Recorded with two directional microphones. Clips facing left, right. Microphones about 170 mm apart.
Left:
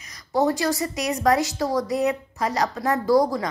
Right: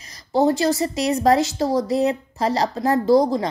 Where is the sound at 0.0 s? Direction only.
30° right (ahead or behind).